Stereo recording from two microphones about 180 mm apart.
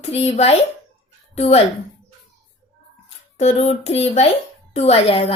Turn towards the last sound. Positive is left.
turn(degrees=30)  # may be behind; listen again after turning